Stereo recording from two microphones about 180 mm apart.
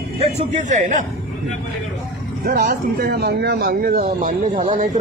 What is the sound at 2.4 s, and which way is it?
Speech, 55° right (ahead or behind).